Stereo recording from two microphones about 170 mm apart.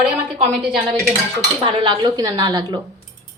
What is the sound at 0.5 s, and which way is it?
Speech, 5° right (ahead or behind).